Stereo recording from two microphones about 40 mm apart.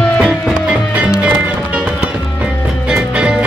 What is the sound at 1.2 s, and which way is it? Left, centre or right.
Music, right.